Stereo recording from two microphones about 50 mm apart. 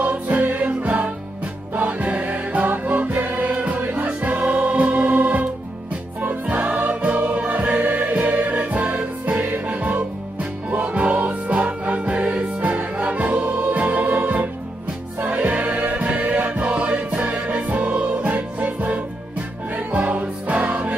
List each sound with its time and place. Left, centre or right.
0.0 s music: right
17.6 s music: right